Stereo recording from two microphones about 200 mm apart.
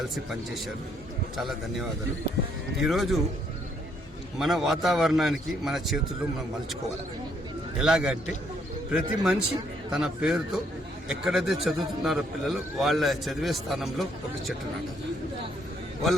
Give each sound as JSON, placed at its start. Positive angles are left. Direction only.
{"t": 1.4, "sound": "a man's voice", "side_deg": 0}
{"t": 4.4, "sound": "a man's voice", "side_deg": 0}
{"t": 7.8, "sound": "a man's voice", "side_deg": -5}